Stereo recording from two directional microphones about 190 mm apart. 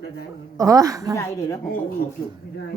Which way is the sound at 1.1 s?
15° left (ahead or behind).